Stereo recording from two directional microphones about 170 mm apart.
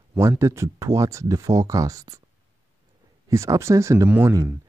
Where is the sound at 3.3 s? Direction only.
20° right (ahead or behind).